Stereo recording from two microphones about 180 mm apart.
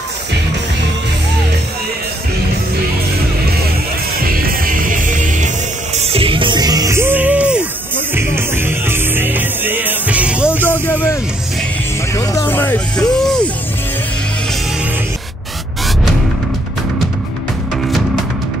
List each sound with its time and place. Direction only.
4.2 s music: 55° right (ahead or behind)
5.9 s music: 35° right (ahead or behind); by 10.7 s 10° right (ahead or behind)
10.7 s music: 10° left (ahead or behind)
12.2 s speech: 15° left (ahead or behind)